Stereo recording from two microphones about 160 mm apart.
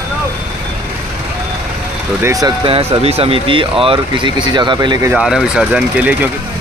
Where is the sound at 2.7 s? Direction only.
40° right (ahead or behind).